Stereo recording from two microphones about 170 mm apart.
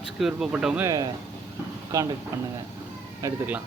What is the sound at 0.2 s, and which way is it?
Speech, 5° right (ahead or behind).